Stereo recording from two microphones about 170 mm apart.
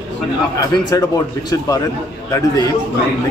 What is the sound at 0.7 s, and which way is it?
A man's voice, 20° left (ahead or behind).